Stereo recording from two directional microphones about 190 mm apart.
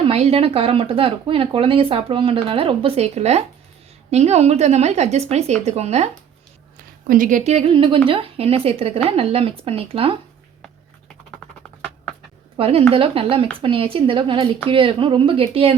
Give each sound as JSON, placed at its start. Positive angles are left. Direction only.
{"t": 0.0, "sound": "speech", "side_deg": -30}
{"t": 7.1, "sound": "speech", "side_deg": -45}
{"t": 12.5, "sound": "speech", "side_deg": -30}